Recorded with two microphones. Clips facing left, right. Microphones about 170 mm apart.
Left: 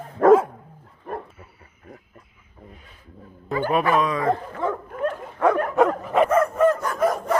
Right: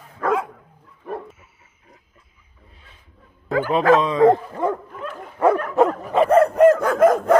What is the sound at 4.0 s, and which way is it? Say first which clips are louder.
Dog: right 7 dB; 25° right (ahead or behind).